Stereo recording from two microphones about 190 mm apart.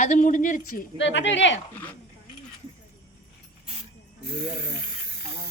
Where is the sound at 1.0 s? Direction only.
70° left (ahead or behind).